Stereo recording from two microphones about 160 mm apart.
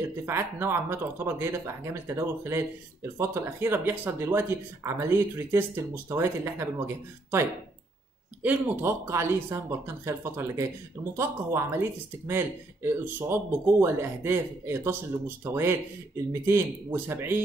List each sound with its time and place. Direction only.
0.2 s speech: 15° right (ahead or behind)
8.4 s speech: 10° right (ahead or behind)